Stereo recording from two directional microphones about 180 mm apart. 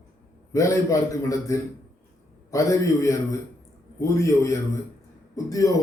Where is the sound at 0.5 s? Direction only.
15° left (ahead or behind).